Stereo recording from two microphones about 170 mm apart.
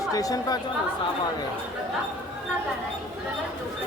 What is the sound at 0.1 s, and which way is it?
Speech, 20° left (ahead or behind).